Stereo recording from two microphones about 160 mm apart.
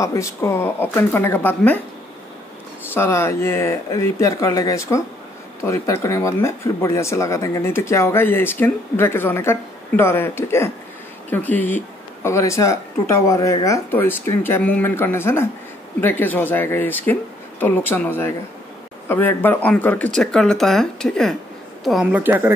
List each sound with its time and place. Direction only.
0.0 s speech: 20° left (ahead or behind)
2.9 s a woman's voice: 15° left (ahead or behind); by 22.5 s 10° right (ahead or behind)